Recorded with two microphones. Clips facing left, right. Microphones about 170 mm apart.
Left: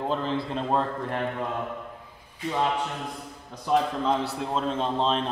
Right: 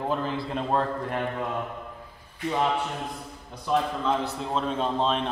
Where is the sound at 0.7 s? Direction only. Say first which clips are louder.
Right 1 dB; centre (ahead or behind).